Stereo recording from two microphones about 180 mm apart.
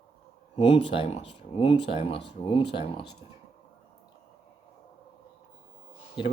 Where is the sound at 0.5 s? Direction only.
35° left (ahead or behind).